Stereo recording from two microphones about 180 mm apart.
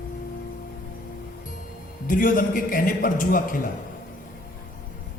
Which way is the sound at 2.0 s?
50° left (ahead or behind).